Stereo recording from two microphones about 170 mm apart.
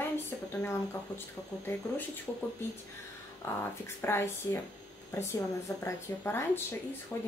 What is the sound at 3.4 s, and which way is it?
Speech, 15° left (ahead or behind).